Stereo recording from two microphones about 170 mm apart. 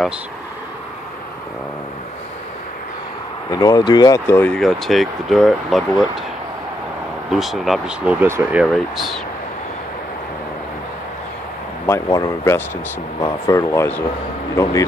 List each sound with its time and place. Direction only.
3.5 s speech: 25° left (ahead or behind); by 6.0 s centre (ahead or behind)
7.2 s speech: centre (ahead or behind)
8.7 s speech: centre (ahead or behind)
11.8 s speech: 20° left (ahead or behind)